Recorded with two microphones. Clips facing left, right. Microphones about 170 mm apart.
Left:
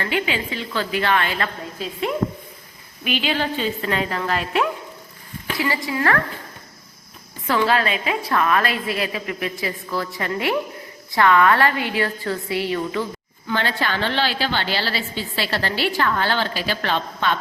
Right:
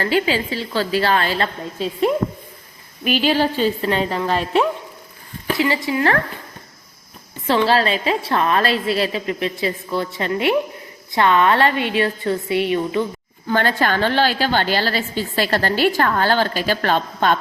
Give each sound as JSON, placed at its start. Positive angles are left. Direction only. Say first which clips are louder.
{"t": 0.0, "sound": "a woman's voice", "louder": "right 5 dB", "side_deg": -35}
{"t": 7.4, "sound": "a woman's voice", "louder": "right 3 dB", "side_deg": -25}
{"t": 13.5, "sound": "a woman's voice", "louder": "right 5 dB", "side_deg": -45}